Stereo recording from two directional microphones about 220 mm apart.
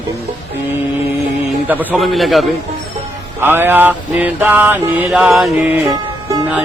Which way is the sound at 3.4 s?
10° right (ahead or behind).